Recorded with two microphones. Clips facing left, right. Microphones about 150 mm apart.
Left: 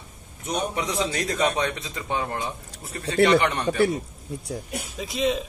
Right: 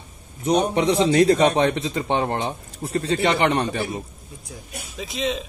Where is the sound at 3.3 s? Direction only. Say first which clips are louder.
Right 2 dB; 30° right (ahead or behind).